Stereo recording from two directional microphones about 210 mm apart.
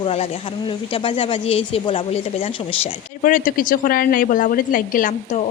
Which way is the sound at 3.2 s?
40° left (ahead or behind).